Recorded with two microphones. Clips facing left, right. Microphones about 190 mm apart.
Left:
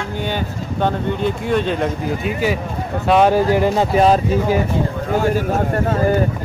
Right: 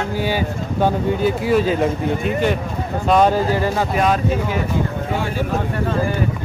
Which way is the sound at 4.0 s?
35° left (ahead or behind).